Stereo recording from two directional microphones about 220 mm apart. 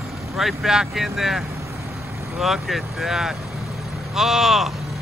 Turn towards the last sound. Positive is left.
turn(degrees=0)  # may be behind; listen again after turning